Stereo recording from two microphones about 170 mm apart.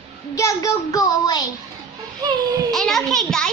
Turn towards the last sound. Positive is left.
turn(degrees=5)  # may be behind; listen again after turning